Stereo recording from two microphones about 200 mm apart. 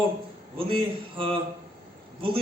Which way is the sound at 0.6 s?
25° right (ahead or behind).